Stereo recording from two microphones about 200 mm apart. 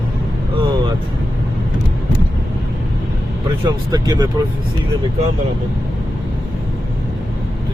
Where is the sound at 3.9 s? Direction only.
20° right (ahead or behind).